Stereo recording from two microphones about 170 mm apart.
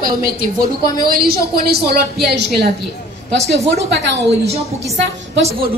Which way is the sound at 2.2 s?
75° right (ahead or behind).